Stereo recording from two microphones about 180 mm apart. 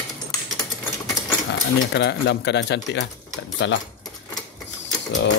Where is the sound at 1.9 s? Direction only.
70° left (ahead or behind).